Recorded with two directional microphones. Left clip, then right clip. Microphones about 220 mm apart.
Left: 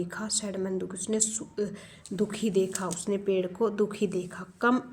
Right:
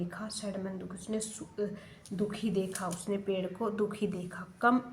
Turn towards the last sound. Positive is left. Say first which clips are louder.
# left 2 dB
turn(degrees=40)  # may be behind; listen again after turning